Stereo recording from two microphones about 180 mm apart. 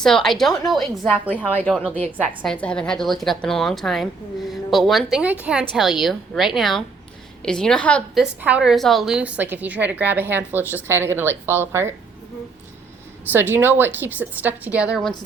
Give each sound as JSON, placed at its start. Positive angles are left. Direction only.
{"t": 0.0, "sound": "a woman's voice", "side_deg": 5}
{"t": 1.5, "sound": "a woman's voice", "side_deg": 10}
{"t": 13.3, "sound": "a woman's voice", "side_deg": -10}